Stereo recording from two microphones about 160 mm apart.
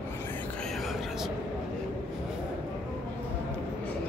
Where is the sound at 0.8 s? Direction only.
Centre (ahead or behind).